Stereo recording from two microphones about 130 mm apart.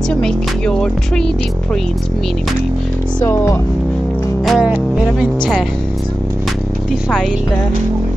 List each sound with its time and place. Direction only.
0.1 s speech: 5° left (ahead or behind)
3.3 s speech: 20° left (ahead or behind)
4.5 s music: 5° right (ahead or behind)
5.2 s speech: centre (ahead or behind)